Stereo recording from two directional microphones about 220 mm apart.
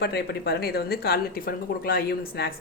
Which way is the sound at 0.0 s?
45° left (ahead or behind).